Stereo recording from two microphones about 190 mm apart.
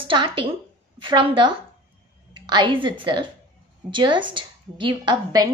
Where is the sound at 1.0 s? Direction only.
25° right (ahead or behind).